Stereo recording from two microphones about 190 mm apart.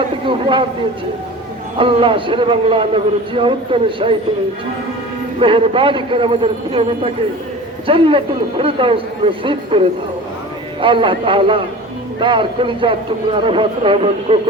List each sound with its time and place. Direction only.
0.3 s a man's voice: 25° right (ahead or behind)
1.8 s a man's voice: 25° right (ahead or behind)
5.4 s a man's voice: 25° right (ahead or behind)